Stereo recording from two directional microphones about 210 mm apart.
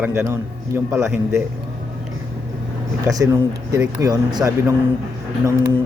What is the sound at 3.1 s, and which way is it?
Speech, 15° right (ahead or behind).